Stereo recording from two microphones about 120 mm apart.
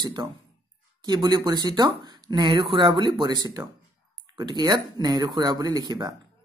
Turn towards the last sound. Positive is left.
turn(degrees=-35)  # may be behind; listen again after turning